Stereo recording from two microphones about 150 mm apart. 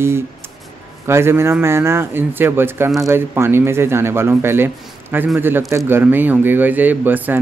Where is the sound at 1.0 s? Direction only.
15° right (ahead or behind).